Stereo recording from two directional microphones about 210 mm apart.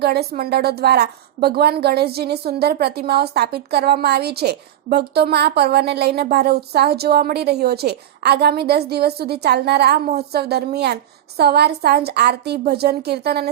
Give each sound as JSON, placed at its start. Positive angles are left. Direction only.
{"t": 0.0, "sound": "a woman's voice", "side_deg": -50}